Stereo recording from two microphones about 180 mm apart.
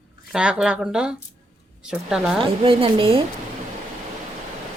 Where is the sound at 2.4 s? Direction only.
30° right (ahead or behind).